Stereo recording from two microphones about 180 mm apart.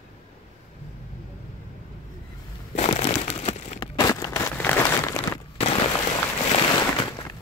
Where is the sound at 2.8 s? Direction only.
35° left (ahead or behind).